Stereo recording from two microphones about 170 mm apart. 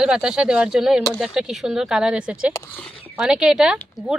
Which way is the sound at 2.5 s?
15° left (ahead or behind).